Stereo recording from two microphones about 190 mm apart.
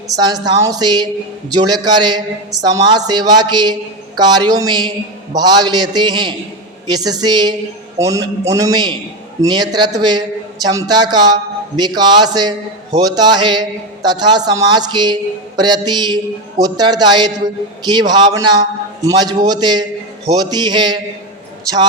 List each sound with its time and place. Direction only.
0.2 s a man's voice: 20° right (ahead or behind)